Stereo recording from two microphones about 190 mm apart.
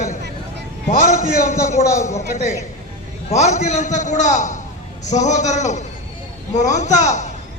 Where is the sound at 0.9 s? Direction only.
45° left (ahead or behind).